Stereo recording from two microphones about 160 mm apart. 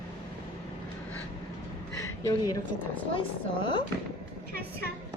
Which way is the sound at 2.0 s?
20° left (ahead or behind).